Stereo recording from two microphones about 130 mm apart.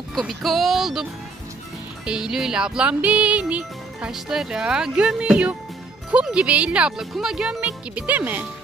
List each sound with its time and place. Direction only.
0.1 s speech: centre (ahead or behind)
2.0 s music: 5° right (ahead or behind)